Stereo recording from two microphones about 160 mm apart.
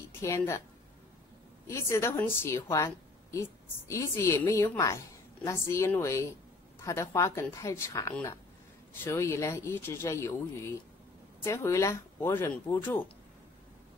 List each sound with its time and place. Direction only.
0.2 s a woman's voice: 15° left (ahead or behind)
1.7 s a woman's voice: 20° left (ahead or behind)